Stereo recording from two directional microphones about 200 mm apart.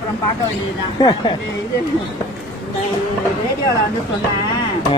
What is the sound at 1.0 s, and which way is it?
Speech, 20° left (ahead or behind).